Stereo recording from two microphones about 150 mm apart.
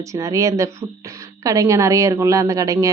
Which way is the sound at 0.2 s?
20° right (ahead or behind).